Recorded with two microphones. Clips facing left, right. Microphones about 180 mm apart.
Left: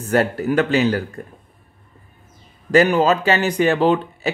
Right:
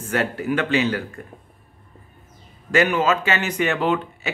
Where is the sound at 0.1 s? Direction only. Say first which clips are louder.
Left 5 dB; 40° left (ahead or behind).